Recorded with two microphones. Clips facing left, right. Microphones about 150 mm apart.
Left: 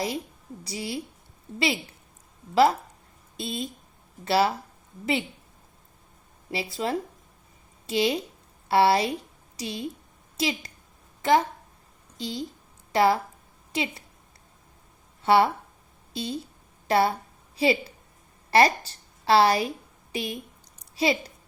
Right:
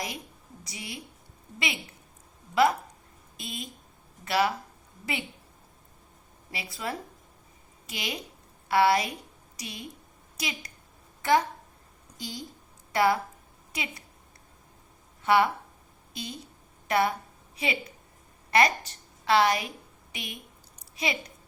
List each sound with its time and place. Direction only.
0.6 s a woman's voice: 30° left (ahead or behind)
3.3 s a woman's voice: 30° left (ahead or behind)
6.5 s a woman's voice: 30° left (ahead or behind)
15.2 s a woman's voice: 30° left (ahead or behind)